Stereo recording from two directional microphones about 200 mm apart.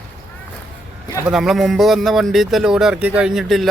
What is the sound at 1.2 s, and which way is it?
A man's voice, centre (ahead or behind).